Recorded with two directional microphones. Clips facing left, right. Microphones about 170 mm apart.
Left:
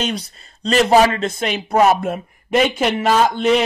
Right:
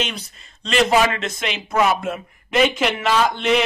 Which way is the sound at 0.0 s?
35° left (ahead or behind).